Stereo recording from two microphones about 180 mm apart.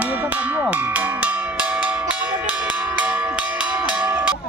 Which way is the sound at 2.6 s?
10° right (ahead or behind).